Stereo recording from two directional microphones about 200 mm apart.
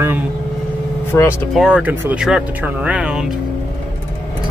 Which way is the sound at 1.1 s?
15° left (ahead or behind).